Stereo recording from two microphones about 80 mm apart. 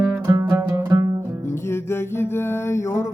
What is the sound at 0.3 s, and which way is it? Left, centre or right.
Music, right.